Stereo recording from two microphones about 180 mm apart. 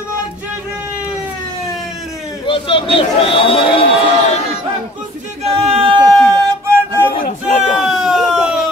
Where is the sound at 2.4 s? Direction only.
30° left (ahead or behind).